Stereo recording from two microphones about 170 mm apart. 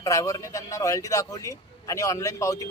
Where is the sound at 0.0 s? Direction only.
20° left (ahead or behind).